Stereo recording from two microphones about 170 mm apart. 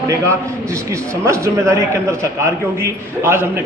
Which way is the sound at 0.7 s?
15° right (ahead or behind).